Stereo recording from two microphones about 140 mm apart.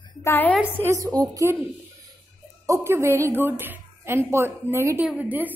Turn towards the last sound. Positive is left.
turn(degrees=-10)  # may be behind; listen again after turning